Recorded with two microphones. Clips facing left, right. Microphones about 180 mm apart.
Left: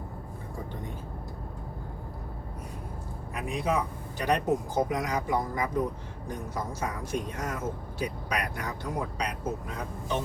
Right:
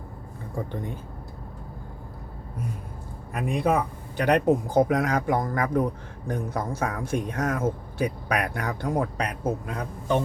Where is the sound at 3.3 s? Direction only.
60° right (ahead or behind).